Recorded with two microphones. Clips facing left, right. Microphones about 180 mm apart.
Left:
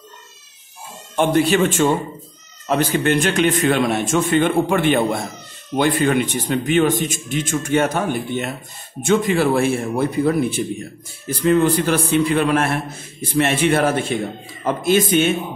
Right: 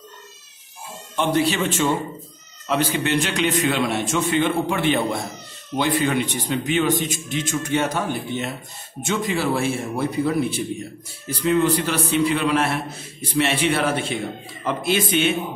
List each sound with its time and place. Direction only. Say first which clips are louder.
1.1 s a man's voice: left 4 dB; 50° left (ahead or behind)